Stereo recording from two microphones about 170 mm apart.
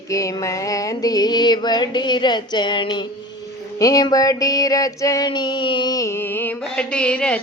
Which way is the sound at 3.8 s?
20° left (ahead or behind).